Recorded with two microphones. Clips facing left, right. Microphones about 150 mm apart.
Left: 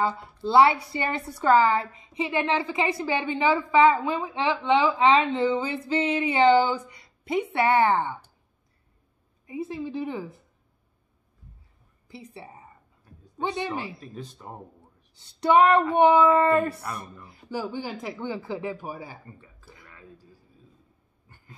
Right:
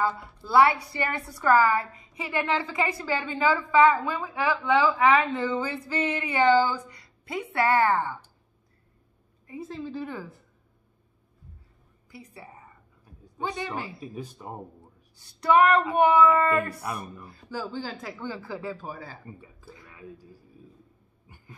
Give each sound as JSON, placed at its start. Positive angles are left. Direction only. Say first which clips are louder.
{"t": 0.0, "sound": "a woman's voice", "louder": "left 2 dB", "side_deg": 25}
{"t": 9.5, "sound": "speech", "louder": "left 4 dB", "side_deg": 10}
{"t": 12.1, "sound": "a woman's voice", "louder": "left 3 dB", "side_deg": 25}
{"t": 13.9, "sound": "speech", "louder": "right 2 dB", "side_deg": -10}
{"t": 15.1, "sound": "a woman's voice", "louder": "left 1 dB", "side_deg": 20}
{"t": 16.8, "sound": "speech", "louder": "right 2 dB", "side_deg": -10}
{"t": 17.3, "sound": "speech", "louder": "left 4 dB", "side_deg": 15}
{"t": 19.2, "sound": "a sound", "louder": "right 4 dB", "side_deg": -15}
{"t": 21.3, "sound": "a sound", "louder": "right 3 dB", "side_deg": -15}